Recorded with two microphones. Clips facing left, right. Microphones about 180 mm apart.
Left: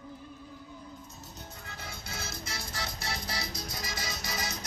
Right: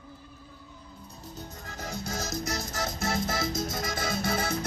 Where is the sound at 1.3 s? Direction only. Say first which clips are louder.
Right 7 dB; 40° right (ahead or behind).